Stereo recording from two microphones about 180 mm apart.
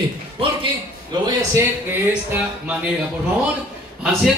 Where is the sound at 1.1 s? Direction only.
20° right (ahead or behind).